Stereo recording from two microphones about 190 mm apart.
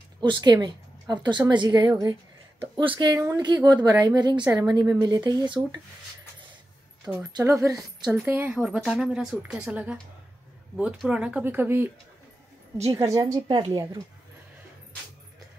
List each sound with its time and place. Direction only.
0.2 s speech: 25° right (ahead or behind)
7.3 s speech: 15° right (ahead or behind)
13.0 s speech: 20° right (ahead or behind)